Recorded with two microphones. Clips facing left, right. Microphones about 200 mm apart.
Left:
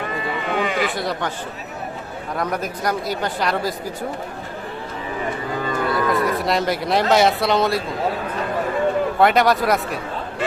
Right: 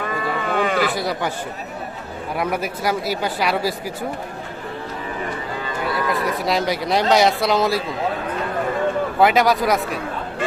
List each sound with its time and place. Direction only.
0.4 s speech: 45° right (ahead or behind)
0.9 s speech: 5° right (ahead or behind)
2.4 s speech: 5° right (ahead or behind)
5.9 s speech: centre (ahead or behind)
9.1 s speech: centre (ahead or behind)